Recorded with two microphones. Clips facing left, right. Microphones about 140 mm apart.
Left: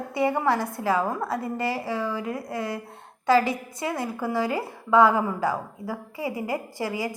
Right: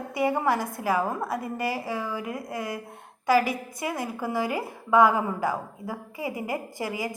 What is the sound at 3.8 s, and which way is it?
A woman's voice, 20° right (ahead or behind).